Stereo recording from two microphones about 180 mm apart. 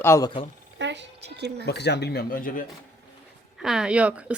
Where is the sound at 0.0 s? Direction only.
15° left (ahead or behind).